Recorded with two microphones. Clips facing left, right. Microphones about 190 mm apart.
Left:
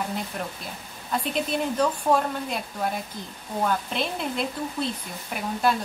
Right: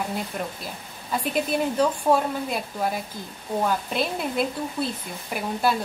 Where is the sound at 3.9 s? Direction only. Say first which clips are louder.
Right 2 dB; 5° right (ahead or behind).